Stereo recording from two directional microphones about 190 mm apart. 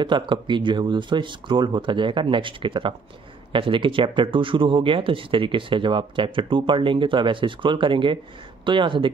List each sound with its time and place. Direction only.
0.0 s speech: 25° right (ahead or behind)